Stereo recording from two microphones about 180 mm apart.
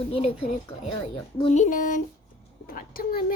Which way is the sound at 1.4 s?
35° left (ahead or behind).